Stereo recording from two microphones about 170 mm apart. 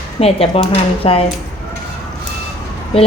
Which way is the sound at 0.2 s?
35° left (ahead or behind).